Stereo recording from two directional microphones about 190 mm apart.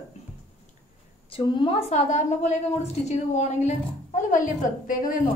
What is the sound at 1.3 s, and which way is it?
A woman's voice, 30° left (ahead or behind).